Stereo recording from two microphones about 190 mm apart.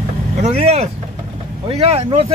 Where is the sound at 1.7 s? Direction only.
30° right (ahead or behind).